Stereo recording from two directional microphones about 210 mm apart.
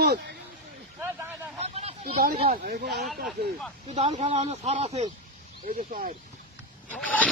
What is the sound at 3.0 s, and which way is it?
Speech, centre (ahead or behind).